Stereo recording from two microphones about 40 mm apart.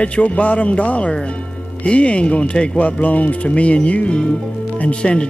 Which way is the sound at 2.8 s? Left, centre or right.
Left.